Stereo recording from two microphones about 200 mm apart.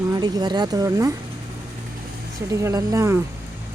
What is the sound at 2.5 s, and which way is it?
Speech, 15° right (ahead or behind).